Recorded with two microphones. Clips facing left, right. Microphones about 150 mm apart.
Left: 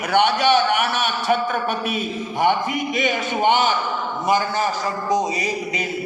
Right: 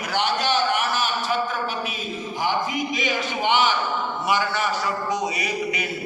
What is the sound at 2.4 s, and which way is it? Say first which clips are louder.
A man's voice: left 5 dB; 60° left (ahead or behind).